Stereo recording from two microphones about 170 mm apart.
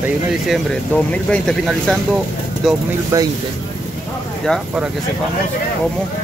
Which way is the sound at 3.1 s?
15° right (ahead or behind).